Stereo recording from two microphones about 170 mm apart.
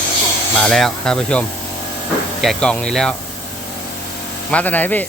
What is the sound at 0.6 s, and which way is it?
Speech, centre (ahead or behind).